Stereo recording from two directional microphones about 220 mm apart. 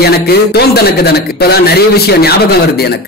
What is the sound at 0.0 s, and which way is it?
Speech, 45° left (ahead or behind).